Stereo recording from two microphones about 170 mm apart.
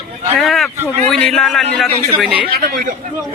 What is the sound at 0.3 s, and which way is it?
Speech, centre (ahead or behind).